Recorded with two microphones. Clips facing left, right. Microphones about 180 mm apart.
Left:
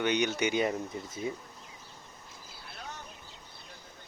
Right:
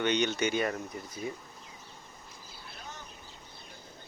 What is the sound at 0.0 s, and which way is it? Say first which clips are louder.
Speech: even; 10° left (ahead or behind).